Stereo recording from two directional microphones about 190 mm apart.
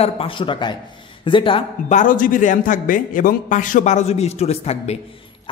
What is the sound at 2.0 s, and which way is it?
A man's voice, 45° left (ahead or behind).